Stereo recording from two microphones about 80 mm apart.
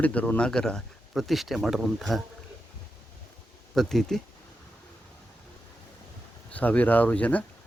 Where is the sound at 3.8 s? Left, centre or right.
Centre.